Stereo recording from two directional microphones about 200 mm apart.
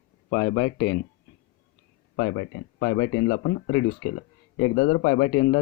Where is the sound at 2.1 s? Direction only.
50° left (ahead or behind).